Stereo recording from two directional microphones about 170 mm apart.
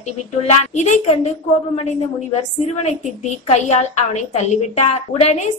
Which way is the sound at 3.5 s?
40° left (ahead or behind).